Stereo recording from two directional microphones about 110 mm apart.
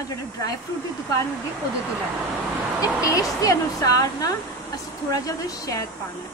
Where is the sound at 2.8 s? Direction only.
30° left (ahead or behind).